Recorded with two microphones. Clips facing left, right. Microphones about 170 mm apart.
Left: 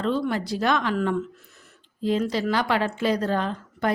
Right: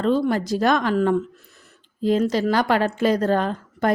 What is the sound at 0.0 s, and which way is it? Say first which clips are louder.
A woman's voice: right 5 dB; 40° right (ahead or behind).